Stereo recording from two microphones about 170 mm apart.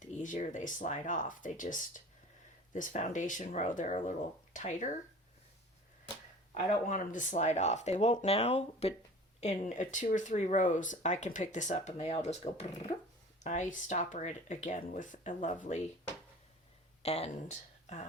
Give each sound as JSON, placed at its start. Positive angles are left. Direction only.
{"t": 0.0, "sound": "speech", "side_deg": 50}
{"t": 6.5, "sound": "speech", "side_deg": 35}
{"t": 6.8, "sound": "speech", "side_deg": 50}
{"t": 17.0, "sound": "speech", "side_deg": 35}